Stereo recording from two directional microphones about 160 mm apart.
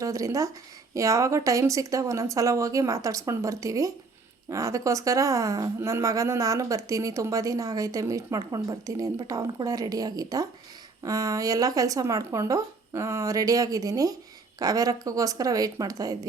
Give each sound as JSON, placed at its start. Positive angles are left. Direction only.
{"t": 0.0, "sound": "a woman's voice", "side_deg": -20}